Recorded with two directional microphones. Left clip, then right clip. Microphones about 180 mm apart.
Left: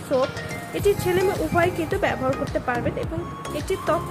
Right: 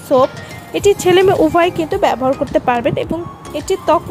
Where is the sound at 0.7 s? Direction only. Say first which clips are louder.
Right 10 dB; 45° right (ahead or behind).